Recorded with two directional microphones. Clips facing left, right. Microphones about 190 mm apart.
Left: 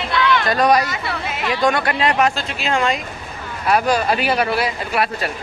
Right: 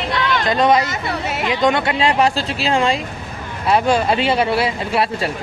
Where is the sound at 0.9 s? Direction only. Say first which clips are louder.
Right 2 dB; 40° right (ahead or behind).